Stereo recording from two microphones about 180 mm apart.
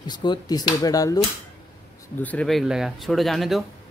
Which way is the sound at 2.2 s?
5° left (ahead or behind).